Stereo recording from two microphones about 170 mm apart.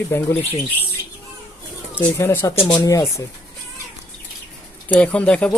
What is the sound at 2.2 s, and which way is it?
Speech, 15° left (ahead or behind).